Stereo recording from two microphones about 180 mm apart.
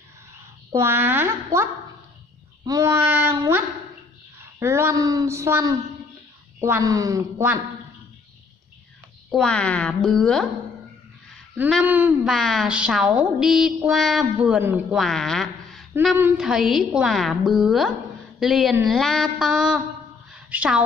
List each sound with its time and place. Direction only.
0.7 s speech: 15° right (ahead or behind)
9.3 s a woman's voice: 5° left (ahead or behind)
11.8 s a woman's voice: 10° right (ahead or behind)
20.3 s a sound: 5° right (ahead or behind)